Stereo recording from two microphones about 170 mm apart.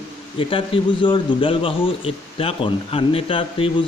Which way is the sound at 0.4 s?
30° left (ahead or behind).